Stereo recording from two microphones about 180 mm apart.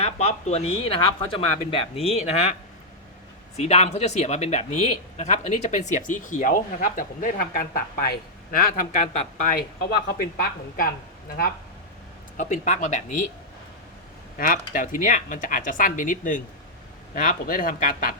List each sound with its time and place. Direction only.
0.0 s speech: 35° left (ahead or behind)
3.6 s speech: 35° left (ahead or behind)
10.2 s speech: 55° left (ahead or behind)
12.4 s speech: 40° left (ahead or behind)
14.3 s speech: 50° left (ahead or behind)